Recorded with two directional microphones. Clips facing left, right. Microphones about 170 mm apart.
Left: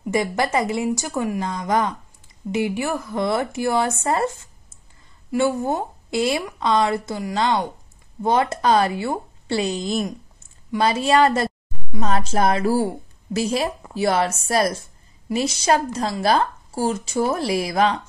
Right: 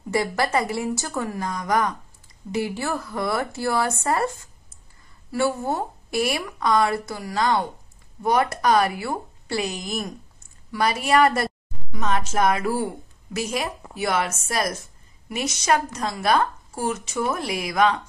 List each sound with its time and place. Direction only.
0.1 s a woman's voice: 20° left (ahead or behind)